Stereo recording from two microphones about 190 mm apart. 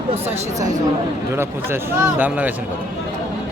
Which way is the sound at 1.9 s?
10° right (ahead or behind).